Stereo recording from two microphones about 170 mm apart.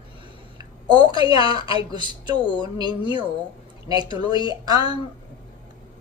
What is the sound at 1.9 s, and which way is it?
A woman's voice, 25° right (ahead or behind).